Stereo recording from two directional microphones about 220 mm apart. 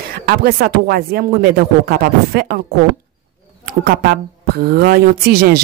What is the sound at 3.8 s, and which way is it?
Speech, 45° right (ahead or behind).